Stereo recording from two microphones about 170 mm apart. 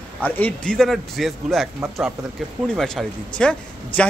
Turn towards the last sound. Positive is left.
turn(degrees=5)  # may be behind; listen again after turning